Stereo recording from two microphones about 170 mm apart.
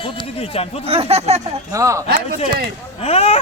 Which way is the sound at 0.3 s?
35° left (ahead or behind).